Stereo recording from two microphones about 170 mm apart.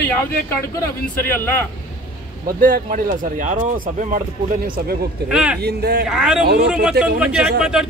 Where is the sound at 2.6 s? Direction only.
55° right (ahead or behind).